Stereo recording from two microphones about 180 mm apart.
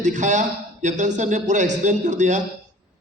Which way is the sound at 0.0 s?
45° right (ahead or behind).